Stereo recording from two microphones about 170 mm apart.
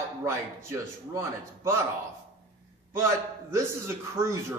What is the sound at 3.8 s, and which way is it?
Speech, 15° right (ahead or behind).